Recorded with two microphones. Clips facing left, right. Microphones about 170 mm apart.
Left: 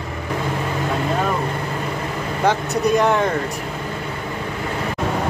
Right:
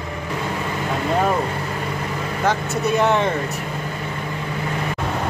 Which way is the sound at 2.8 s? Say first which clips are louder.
Left 1 dB; centre (ahead or behind).